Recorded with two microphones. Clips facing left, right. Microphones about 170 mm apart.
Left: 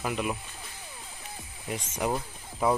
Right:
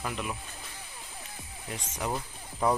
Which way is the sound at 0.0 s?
10° left (ahead or behind).